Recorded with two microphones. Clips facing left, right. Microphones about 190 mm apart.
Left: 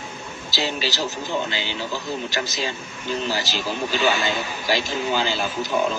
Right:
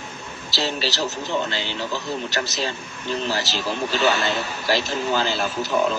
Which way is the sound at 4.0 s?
Centre (ahead or behind).